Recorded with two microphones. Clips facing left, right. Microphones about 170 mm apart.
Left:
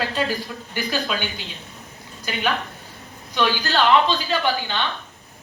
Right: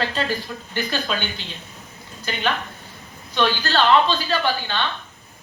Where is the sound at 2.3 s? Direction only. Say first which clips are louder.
Even; 10° left (ahead or behind).